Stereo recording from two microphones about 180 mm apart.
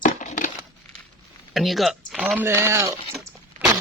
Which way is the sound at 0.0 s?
45° left (ahead or behind).